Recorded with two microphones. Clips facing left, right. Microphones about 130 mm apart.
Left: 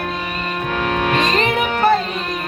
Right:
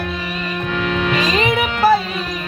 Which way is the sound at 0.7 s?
40° left (ahead or behind).